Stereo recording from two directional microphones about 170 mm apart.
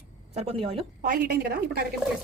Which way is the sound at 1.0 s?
60° right (ahead or behind).